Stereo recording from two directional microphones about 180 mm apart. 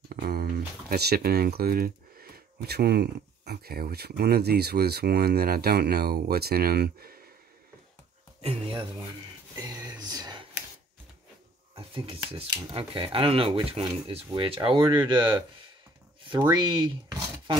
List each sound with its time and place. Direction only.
0.1 s speech: 55° right (ahead or behind)
8.4 s speech: 30° right (ahead or behind)
9.6 s speech: 20° right (ahead or behind)
11.7 s speech: 30° right (ahead or behind)